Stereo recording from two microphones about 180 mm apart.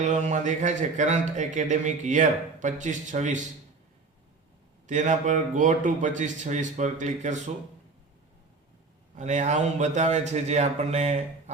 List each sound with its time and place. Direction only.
0.0 s a man's voice: 40° right (ahead or behind)
4.9 s a man's voice: 45° right (ahead or behind)
9.1 s a man's voice: 40° right (ahead or behind)